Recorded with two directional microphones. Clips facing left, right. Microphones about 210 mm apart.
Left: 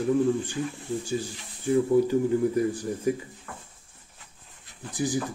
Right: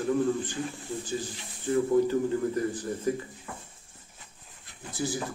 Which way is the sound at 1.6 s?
10° left (ahead or behind).